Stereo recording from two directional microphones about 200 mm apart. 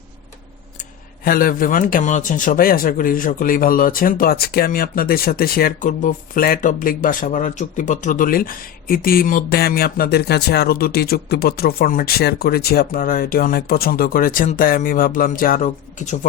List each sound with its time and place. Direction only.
0.8 s speech: 45° left (ahead or behind)